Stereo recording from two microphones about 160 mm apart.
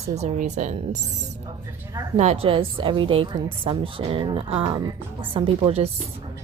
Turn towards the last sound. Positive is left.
turn(degrees=-35)  # may be behind; listen again after turning